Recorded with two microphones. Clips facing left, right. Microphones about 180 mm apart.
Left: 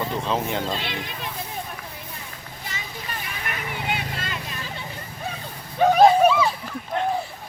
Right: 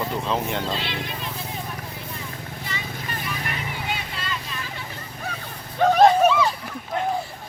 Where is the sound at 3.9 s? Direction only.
50° left (ahead or behind).